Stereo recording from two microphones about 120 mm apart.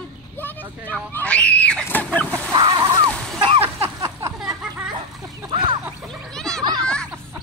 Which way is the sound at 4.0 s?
35° right (ahead or behind).